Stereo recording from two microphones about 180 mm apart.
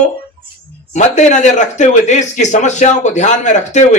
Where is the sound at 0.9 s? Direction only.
40° left (ahead or behind).